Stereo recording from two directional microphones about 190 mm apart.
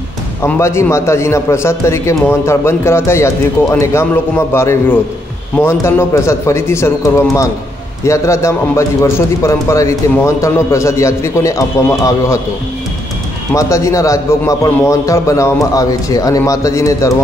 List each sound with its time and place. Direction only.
0.4 s a man's voice: 15° left (ahead or behind)
13.6 s a man's voice: 15° left (ahead or behind)